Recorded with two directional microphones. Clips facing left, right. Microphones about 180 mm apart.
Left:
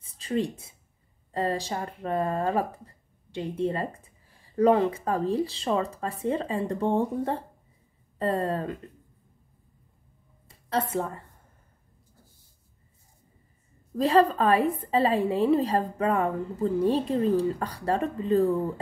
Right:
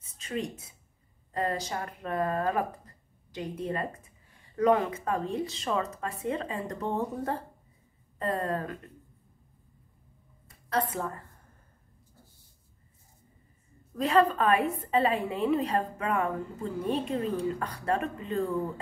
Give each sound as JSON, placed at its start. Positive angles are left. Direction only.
{"t": 0.0, "sound": "a sound", "side_deg": 35}
{"t": 1.3, "sound": "speech", "side_deg": 30}
{"t": 10.7, "sound": "speech", "side_deg": 25}
{"t": 13.9, "sound": "speech", "side_deg": 35}